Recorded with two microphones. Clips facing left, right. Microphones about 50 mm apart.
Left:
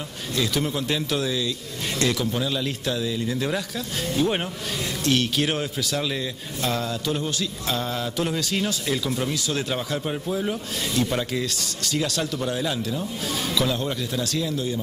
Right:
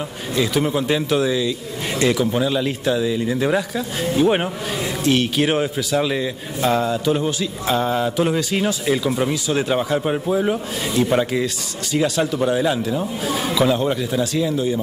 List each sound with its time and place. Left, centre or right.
0.4 s a man's voice: centre